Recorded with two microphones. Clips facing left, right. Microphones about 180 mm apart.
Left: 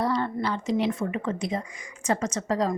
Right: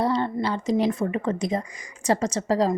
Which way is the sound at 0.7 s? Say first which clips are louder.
Right 4 dB; 40° right (ahead or behind).